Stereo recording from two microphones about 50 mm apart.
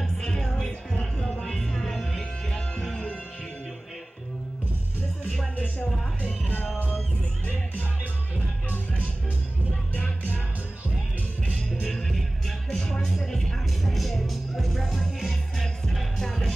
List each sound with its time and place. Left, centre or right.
0.0 s music: centre
6.2 s music: left
8.6 s music: left
11.9 s music: centre
12.7 s music: centre